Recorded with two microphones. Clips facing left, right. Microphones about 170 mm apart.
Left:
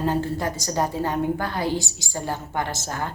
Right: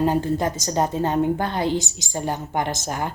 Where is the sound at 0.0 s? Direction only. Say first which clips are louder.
Right 3 dB; 15° right (ahead or behind).